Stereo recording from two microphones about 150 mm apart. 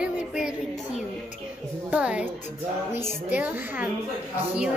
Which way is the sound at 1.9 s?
10° right (ahead or behind).